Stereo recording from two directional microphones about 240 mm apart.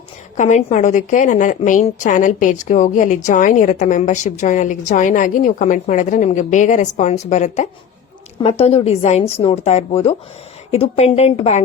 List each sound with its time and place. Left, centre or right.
0.3 s a woman's voice: left